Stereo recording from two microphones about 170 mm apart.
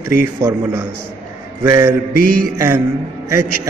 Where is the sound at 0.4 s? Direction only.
25° right (ahead or behind).